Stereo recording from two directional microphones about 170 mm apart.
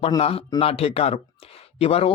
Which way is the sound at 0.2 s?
35° left (ahead or behind).